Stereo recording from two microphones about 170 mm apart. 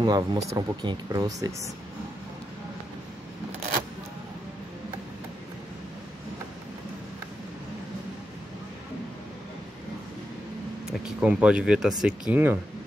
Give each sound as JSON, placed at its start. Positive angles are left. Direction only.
{"t": 0.0, "sound": "speech", "side_deg": -25}
{"t": 10.9, "sound": "speech", "side_deg": -5}